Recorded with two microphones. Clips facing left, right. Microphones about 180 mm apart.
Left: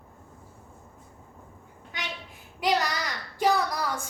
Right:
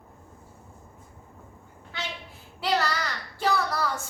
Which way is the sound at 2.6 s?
15° left (ahead or behind).